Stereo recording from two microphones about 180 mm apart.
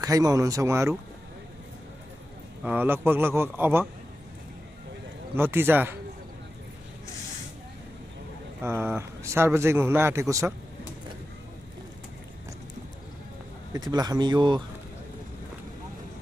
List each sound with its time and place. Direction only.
0.0 s a man's voice: 20° right (ahead or behind)
2.6 s a man's voice: 10° right (ahead or behind)
5.3 s a man's voice: 10° right (ahead or behind)
8.6 s a man's voice: 15° right (ahead or behind)
13.7 s speech: 20° right (ahead or behind)